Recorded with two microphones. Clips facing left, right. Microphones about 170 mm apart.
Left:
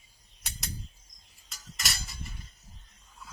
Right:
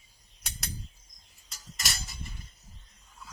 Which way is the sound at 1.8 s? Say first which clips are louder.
Even; centre (ahead or behind).